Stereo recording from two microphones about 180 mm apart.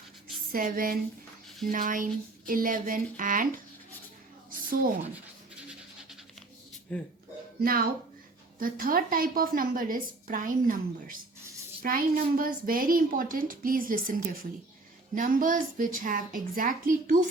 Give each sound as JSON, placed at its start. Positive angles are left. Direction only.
{"t": 0.5, "sound": "a woman's voice", "side_deg": -50}
{"t": 5.1, "sound": "scratch", "side_deg": -5}
{"t": 6.9, "sound": "speech", "side_deg": 5}
{"t": 7.6, "sound": "a woman's voice", "side_deg": -55}